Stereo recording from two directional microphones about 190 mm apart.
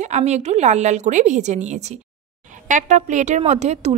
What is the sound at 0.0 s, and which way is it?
Speech, 35° right (ahead or behind).